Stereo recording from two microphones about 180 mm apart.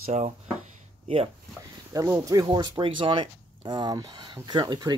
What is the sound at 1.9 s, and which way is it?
Speech, 20° right (ahead or behind).